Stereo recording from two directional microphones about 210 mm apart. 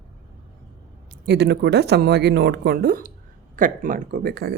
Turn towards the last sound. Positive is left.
turn(degrees=-50)  # may be behind; listen again after turning